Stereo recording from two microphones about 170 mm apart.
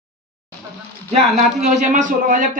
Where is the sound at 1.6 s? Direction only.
45° right (ahead or behind).